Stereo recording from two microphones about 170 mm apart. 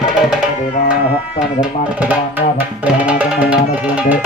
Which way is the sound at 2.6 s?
10° right (ahead or behind).